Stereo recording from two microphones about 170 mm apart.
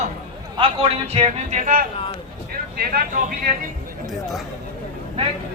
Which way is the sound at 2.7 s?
60° right (ahead or behind).